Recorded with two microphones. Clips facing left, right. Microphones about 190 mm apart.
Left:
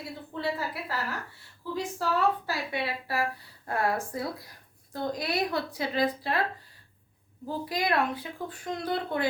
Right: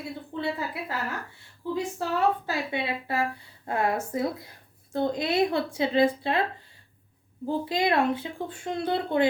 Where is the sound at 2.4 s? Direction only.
20° right (ahead or behind).